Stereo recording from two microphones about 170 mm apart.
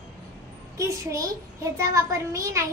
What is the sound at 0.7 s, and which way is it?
Speech, 20° right (ahead or behind).